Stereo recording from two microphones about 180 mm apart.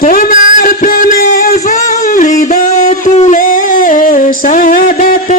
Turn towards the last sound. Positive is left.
turn(degrees=50)  # may be behind; listen again after turning